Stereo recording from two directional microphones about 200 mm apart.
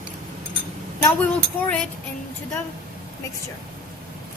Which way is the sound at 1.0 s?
10° left (ahead or behind).